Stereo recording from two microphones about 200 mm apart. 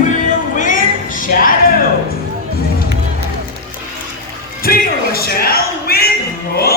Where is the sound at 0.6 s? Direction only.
40° left (ahead or behind).